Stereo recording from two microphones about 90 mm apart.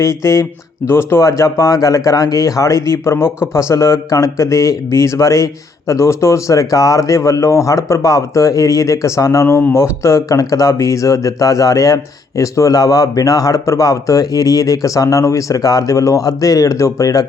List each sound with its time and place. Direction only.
0.0 s speech: 35° left (ahead or behind)